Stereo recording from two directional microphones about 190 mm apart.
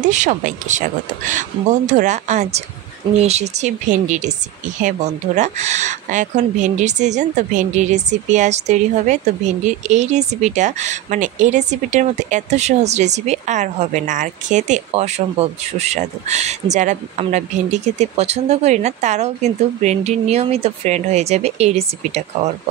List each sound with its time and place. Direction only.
0.1 s speech: 40° right (ahead or behind)